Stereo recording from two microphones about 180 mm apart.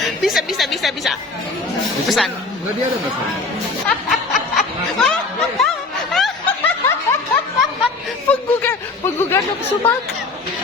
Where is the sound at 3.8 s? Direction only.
Centre (ahead or behind).